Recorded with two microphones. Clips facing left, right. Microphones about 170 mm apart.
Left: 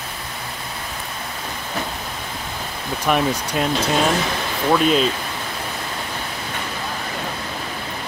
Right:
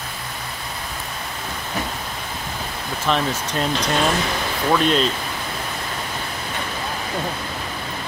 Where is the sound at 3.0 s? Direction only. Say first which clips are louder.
Left 2 dB; 15° left (ahead or behind).